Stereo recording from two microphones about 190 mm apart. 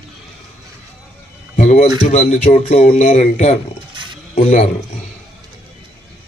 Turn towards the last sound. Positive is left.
turn(degrees=35)  # may be behind; listen again after turning